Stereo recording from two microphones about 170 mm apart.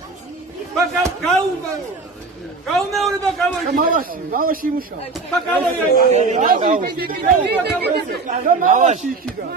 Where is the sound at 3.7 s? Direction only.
55° right (ahead or behind).